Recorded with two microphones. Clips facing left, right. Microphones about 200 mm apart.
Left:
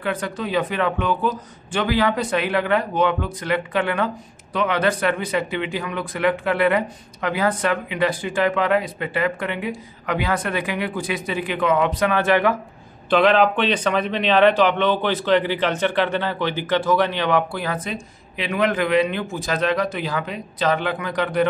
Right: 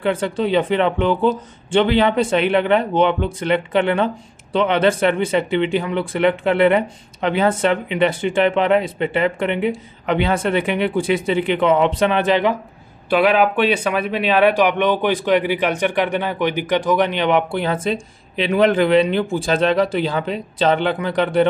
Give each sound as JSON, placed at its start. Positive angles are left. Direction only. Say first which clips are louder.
{"t": 0.0, "sound": "speech", "louder": "right 6 dB", "side_deg": -25}